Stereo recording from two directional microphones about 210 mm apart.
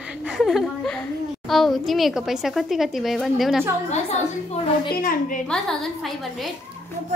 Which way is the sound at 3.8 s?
30° left (ahead or behind).